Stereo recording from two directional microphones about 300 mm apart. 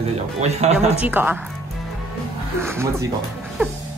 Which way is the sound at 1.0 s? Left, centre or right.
Centre.